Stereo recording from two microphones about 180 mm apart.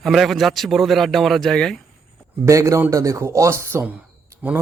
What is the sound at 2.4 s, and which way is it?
Speech, 15° right (ahead or behind).